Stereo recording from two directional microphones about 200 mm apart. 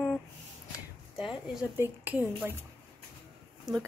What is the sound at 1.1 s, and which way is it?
Speech, centre (ahead or behind).